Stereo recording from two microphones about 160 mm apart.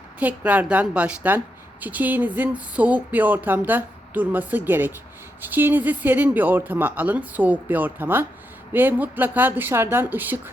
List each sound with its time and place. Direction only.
0.2 s speech: 10° right (ahead or behind)